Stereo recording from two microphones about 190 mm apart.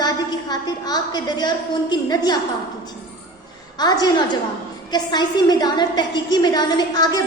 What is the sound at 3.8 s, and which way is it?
A woman's voice, 20° left (ahead or behind).